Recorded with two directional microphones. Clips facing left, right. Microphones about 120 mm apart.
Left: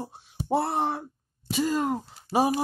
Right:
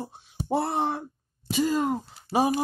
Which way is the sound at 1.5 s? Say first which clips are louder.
Right 1 dB; 5° left (ahead or behind).